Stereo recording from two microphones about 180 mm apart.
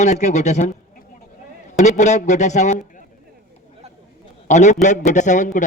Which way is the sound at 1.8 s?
40° left (ahead or behind).